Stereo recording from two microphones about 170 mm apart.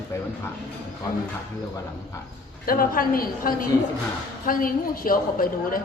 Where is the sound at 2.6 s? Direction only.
55° left (ahead or behind).